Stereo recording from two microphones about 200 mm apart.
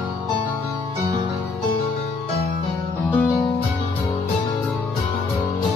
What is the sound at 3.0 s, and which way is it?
Music, 10° left (ahead or behind).